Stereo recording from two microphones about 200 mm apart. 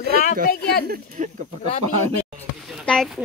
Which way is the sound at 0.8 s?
45° right (ahead or behind).